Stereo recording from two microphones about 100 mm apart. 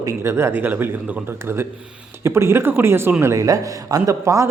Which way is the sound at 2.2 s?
25° right (ahead or behind).